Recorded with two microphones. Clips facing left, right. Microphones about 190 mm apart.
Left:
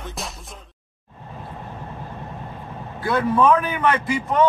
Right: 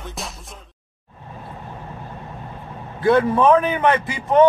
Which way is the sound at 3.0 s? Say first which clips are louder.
Right 3 dB; 25° right (ahead or behind).